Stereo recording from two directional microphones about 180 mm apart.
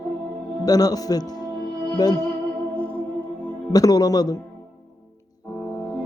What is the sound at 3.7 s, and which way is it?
Speech, 20° left (ahead or behind).